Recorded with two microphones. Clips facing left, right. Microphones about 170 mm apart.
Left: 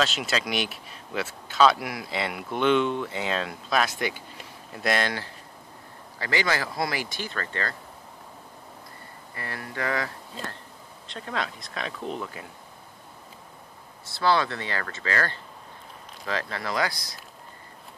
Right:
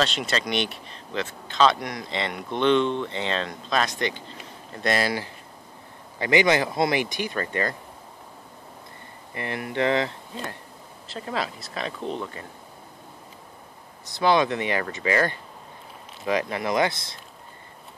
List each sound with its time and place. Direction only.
0.0 s speech: 5° left (ahead or behind)
6.1 s speech: 20° right (ahead or behind)
9.3 s speech: 20° right (ahead or behind)
11.1 s speech: 5° right (ahead or behind)
14.0 s speech: 15° right (ahead or behind)